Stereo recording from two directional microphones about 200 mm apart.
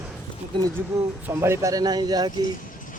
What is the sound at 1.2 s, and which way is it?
Speech, 15° right (ahead or behind).